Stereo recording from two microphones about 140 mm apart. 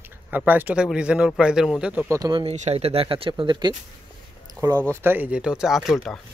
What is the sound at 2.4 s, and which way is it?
Speech, 50° right (ahead or behind).